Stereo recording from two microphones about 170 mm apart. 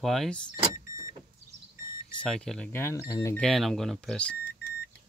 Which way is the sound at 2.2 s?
5° left (ahead or behind).